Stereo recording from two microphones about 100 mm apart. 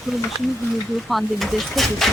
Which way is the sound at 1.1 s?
Centre (ahead or behind).